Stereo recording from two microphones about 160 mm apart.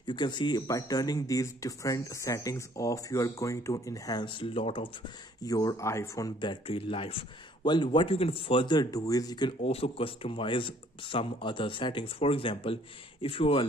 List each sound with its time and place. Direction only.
0.0 s speech: 30° left (ahead or behind)
9.6 s speech: 40° left (ahead or behind)